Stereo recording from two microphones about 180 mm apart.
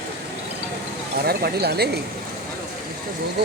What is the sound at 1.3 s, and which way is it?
Speech, 60° right (ahead or behind).